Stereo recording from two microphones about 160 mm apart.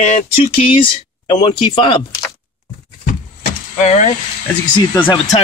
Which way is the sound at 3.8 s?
45° left (ahead or behind).